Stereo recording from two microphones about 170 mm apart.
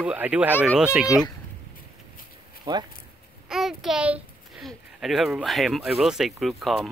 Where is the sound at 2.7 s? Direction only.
20° right (ahead or behind).